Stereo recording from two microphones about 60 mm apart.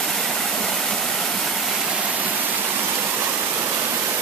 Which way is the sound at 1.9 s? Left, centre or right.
Right.